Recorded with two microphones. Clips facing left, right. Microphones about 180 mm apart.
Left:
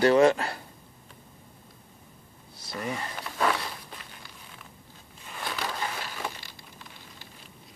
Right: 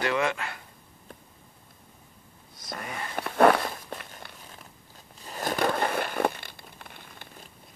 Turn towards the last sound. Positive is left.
turn(degrees=-55)  # may be behind; listen again after turning